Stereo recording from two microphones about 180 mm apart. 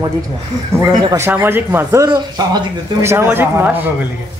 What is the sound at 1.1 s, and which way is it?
Speech, 10° right (ahead or behind).